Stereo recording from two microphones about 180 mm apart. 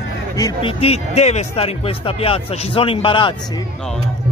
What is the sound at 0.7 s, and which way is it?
Speech, 35° left (ahead or behind).